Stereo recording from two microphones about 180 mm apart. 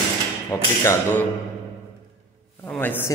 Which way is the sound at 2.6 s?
10° left (ahead or behind).